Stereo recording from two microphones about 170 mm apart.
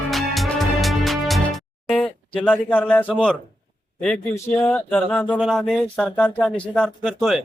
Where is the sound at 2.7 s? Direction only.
10° left (ahead or behind).